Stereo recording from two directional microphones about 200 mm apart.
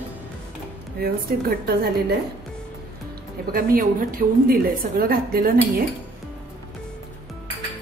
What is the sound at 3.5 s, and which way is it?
A woman's voice, 45° right (ahead or behind).